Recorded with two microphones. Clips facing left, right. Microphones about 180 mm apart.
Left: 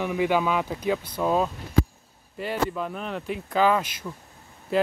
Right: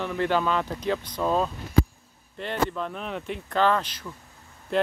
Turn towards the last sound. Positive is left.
turn(degrees=5)  # may be behind; listen again after turning